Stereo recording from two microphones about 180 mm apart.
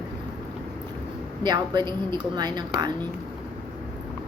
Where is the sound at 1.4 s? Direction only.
25° right (ahead or behind).